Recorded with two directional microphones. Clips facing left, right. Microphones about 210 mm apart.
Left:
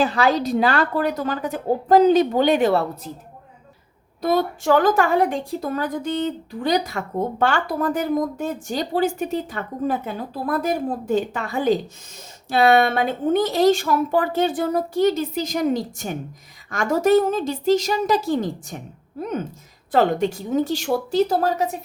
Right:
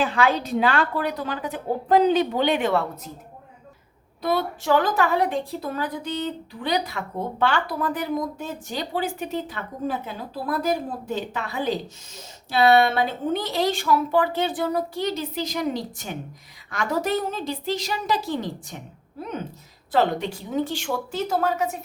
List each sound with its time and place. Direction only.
0.0 s a woman's voice: 40° left (ahead or behind)
4.2 s a woman's voice: 45° left (ahead or behind)